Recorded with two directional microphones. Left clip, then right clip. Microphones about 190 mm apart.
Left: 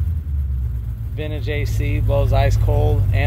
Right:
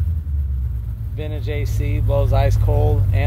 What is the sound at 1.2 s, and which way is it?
Speech, 5° left (ahead or behind).